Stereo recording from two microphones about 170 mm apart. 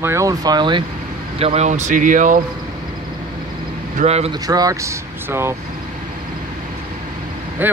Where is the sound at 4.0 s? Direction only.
40° right (ahead or behind).